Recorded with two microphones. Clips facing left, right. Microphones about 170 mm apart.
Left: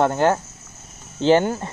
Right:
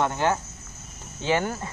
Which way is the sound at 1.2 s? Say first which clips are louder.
Left 8 dB; 30° left (ahead or behind).